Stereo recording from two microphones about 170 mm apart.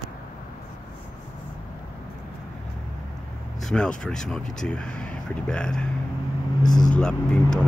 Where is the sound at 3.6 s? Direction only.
5° left (ahead or behind).